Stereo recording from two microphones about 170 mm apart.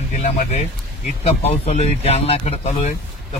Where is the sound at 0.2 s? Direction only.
40° left (ahead or behind).